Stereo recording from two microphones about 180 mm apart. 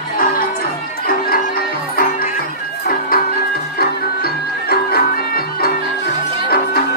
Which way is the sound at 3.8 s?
60° left (ahead or behind).